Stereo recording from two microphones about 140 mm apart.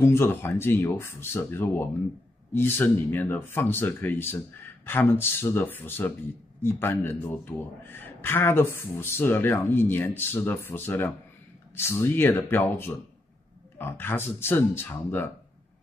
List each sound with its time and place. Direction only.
0.0 s a man's voice: 15° left (ahead or behind)